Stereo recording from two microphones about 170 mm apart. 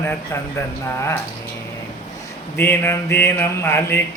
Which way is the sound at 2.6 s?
15° left (ahead or behind).